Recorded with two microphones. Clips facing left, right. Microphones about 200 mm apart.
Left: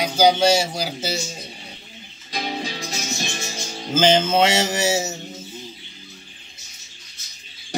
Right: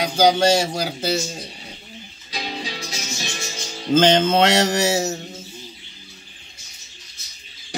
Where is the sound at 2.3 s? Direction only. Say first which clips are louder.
Left 2 dB; 45° left (ahead or behind).